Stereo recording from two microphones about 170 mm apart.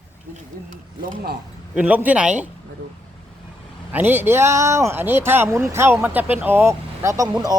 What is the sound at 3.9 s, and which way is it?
Speech, 10° right (ahead or behind).